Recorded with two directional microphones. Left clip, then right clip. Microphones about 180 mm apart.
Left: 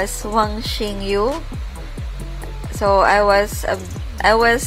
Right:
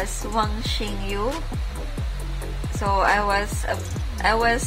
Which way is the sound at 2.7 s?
35° left (ahead or behind).